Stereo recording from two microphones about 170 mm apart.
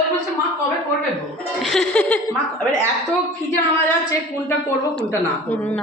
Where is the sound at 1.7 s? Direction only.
5° left (ahead or behind).